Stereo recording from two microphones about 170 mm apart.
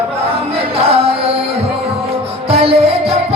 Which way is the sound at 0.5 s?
35° right (ahead or behind).